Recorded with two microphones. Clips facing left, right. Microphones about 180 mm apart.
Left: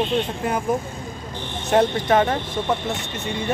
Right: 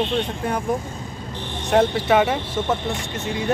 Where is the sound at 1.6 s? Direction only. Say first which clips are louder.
Even; centre (ahead or behind).